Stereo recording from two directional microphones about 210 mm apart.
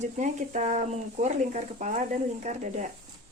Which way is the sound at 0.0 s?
35° right (ahead or behind).